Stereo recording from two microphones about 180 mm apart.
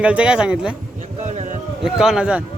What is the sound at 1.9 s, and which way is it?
Speech, 5° right (ahead or behind).